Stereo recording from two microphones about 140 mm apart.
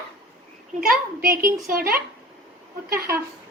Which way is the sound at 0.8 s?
90° right.